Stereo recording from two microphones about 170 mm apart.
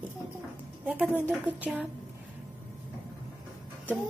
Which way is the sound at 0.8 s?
10° right (ahead or behind).